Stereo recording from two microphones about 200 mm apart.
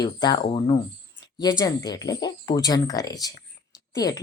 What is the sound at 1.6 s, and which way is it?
Speech, 20° left (ahead or behind).